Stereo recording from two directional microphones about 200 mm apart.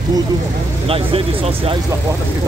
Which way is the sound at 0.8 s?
30° right (ahead or behind).